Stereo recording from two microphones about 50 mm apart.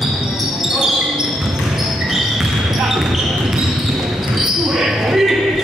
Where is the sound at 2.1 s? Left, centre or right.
Centre.